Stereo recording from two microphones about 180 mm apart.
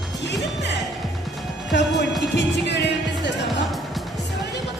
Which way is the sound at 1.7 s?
75° left (ahead or behind).